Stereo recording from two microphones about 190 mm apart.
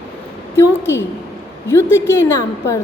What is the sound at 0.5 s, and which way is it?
A woman's voice, 10° left (ahead or behind).